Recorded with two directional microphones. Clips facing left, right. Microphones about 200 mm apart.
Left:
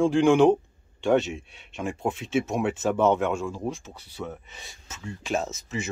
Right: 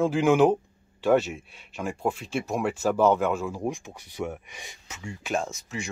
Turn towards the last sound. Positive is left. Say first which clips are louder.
# left 2 dB
turn(degrees=0)  # may be behind; listen again after turning